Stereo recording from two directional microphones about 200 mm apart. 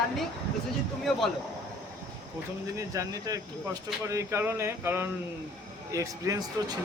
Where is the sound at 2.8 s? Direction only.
15° right (ahead or behind).